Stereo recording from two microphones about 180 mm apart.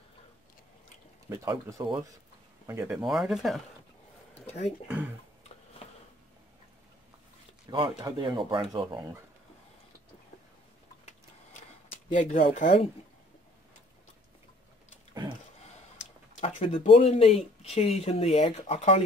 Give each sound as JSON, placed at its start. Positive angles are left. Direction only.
{"t": 1.4, "sound": "speech", "side_deg": -15}
{"t": 3.0, "sound": "speech", "side_deg": 0}
{"t": 4.6, "sound": "speech", "side_deg": -10}
{"t": 5.8, "sound": "a sound", "side_deg": 35}
{"t": 7.7, "sound": "speech", "side_deg": -20}
{"t": 12.1, "sound": "speech", "side_deg": 40}
{"t": 16.3, "sound": "speech", "side_deg": 35}